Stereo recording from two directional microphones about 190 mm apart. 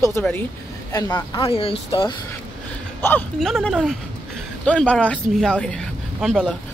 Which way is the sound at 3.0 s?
5° left (ahead or behind).